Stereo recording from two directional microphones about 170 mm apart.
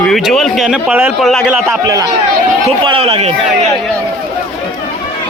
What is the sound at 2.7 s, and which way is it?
A man's voice, 35° right (ahead or behind).